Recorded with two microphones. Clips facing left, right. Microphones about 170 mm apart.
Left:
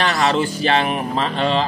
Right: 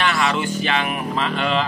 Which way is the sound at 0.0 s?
40° left (ahead or behind).